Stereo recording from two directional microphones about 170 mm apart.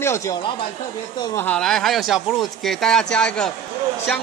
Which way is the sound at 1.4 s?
5° left (ahead or behind).